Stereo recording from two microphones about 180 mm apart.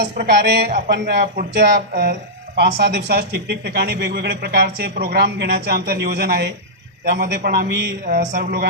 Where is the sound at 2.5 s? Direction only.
70° right (ahead or behind).